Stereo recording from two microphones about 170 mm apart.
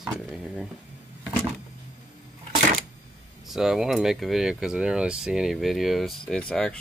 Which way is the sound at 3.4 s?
Centre (ahead or behind).